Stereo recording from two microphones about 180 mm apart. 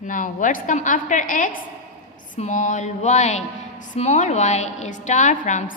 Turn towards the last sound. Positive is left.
turn(degrees=45)  # may be behind; listen again after turning